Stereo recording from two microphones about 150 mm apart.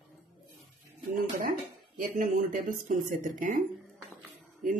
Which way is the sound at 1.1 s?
70° right (ahead or behind).